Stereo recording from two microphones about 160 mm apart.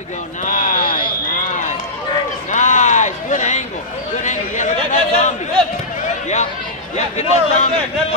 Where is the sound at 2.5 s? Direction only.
50° left (ahead or behind).